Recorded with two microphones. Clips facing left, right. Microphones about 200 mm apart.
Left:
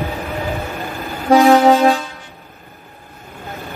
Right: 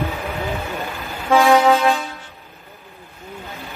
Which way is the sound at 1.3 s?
35° left (ahead or behind).